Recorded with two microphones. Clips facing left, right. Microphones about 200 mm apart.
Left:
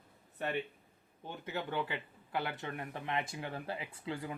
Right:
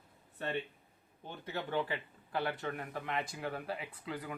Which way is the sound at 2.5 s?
20° left (ahead or behind).